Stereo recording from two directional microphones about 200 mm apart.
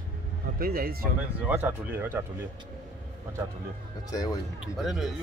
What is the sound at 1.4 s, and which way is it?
Speech, 10° right (ahead or behind).